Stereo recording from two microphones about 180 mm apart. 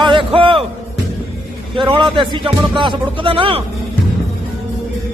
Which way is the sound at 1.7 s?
25° right (ahead or behind).